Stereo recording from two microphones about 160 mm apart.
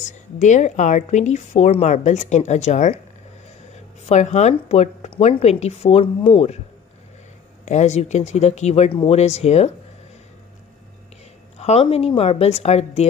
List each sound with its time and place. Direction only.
0.0 s speech: 50° left (ahead or behind)
4.1 s speech: 45° left (ahead or behind)
7.6 s speech: 45° left (ahead or behind)
11.5 s a woman's voice: 40° left (ahead or behind)